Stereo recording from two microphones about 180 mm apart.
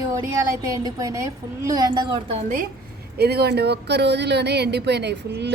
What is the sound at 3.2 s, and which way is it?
A woman's voice, 65° right (ahead or behind).